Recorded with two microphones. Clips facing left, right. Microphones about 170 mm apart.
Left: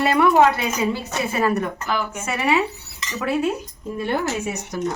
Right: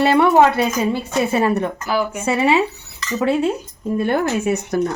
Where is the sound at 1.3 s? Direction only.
25° right (ahead or behind).